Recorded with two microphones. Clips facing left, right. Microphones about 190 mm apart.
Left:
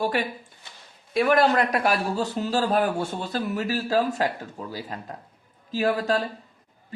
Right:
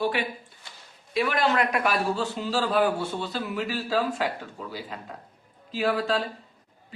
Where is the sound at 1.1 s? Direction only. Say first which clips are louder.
Left 4 dB; 45° left (ahead or behind).